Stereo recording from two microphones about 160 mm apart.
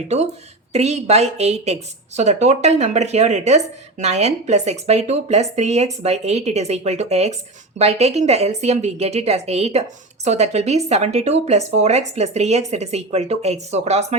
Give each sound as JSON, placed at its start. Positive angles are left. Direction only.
{"t": 0.7, "sound": "a woman's voice", "side_deg": -45}